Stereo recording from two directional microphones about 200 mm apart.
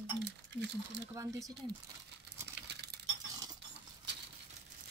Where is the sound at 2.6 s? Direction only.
55° right (ahead or behind).